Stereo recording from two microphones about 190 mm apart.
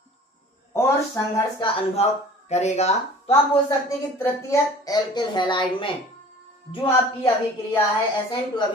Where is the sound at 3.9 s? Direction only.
15° left (ahead or behind).